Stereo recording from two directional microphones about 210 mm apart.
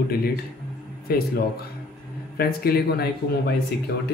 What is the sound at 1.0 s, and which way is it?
Speech, 45° left (ahead or behind).